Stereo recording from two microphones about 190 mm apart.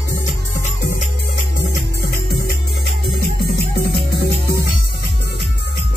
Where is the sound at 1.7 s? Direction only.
55° left (ahead or behind).